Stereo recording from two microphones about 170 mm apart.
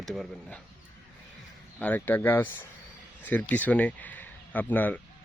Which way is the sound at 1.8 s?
10° left (ahead or behind).